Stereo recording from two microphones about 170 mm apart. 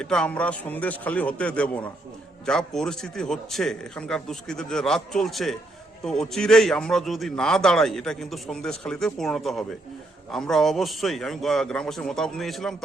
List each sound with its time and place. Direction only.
0.0 s a man's voice: 5° left (ahead or behind)